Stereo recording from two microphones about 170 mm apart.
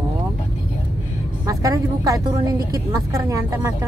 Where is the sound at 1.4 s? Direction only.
20° right (ahead or behind).